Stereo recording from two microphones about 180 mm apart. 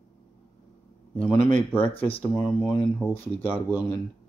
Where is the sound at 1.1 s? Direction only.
10° left (ahead or behind).